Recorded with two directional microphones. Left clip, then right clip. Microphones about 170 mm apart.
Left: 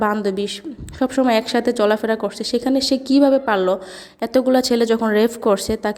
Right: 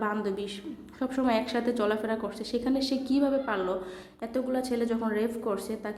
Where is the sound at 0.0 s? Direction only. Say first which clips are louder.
Left 11 dB; 40° left (ahead or behind).